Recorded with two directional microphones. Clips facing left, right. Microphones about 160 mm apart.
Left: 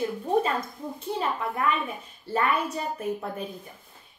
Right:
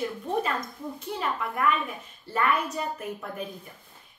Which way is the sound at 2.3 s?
30° left (ahead or behind).